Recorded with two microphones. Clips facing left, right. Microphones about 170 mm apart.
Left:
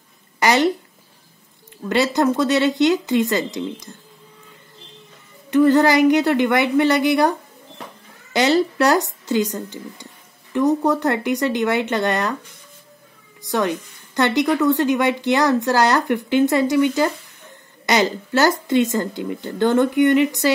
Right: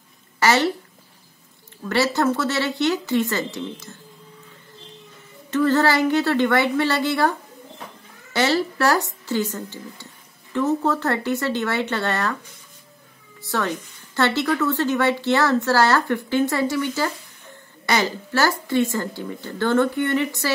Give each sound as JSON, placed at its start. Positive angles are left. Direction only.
{"t": 0.4, "sound": "a sound", "side_deg": 15}
{"t": 1.9, "sound": "a woman's voice", "side_deg": 20}
{"t": 5.5, "sound": "a woman's voice", "side_deg": 15}
{"t": 13.4, "sound": "a woman's voice", "side_deg": 15}